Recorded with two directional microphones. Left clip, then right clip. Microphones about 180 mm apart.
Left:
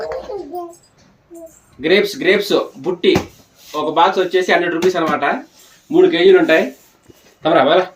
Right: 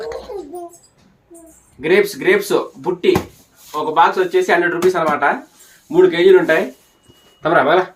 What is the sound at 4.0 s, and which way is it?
Speech, 20° right (ahead or behind).